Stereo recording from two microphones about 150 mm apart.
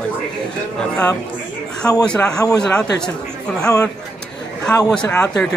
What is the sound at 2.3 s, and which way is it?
Speech, 25° left (ahead or behind).